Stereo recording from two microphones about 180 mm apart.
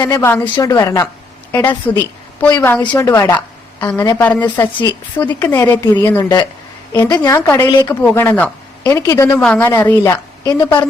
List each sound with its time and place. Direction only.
0.0 s a woman's voice: 20° left (ahead or behind)
6.2 s a woman's voice: 25° left (ahead or behind)